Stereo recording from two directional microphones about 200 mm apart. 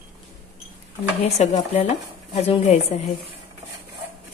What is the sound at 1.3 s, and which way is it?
A woman's voice, 30° left (ahead or behind).